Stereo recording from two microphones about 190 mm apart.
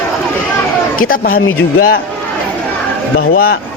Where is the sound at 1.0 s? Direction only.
45° left (ahead or behind).